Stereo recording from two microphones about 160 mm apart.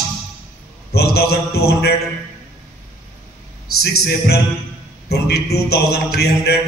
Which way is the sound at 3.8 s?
90° left.